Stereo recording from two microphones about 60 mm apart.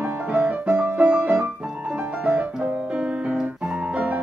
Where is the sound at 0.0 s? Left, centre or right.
Right.